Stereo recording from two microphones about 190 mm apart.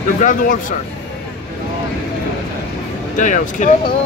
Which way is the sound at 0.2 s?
45° left (ahead or behind).